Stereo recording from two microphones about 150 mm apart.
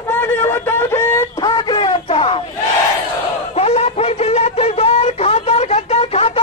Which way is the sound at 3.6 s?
45° left (ahead or behind).